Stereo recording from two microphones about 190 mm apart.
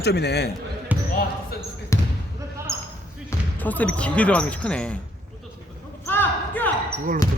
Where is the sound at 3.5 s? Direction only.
10° left (ahead or behind).